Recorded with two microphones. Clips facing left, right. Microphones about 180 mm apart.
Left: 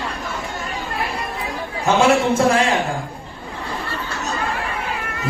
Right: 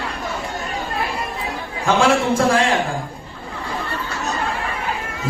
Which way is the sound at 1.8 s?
25° left (ahead or behind).